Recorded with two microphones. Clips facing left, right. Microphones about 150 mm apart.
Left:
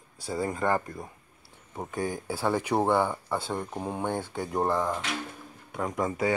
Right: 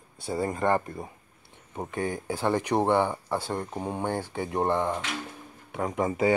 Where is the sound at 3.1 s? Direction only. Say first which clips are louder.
Right 1 dB; 10° right (ahead or behind).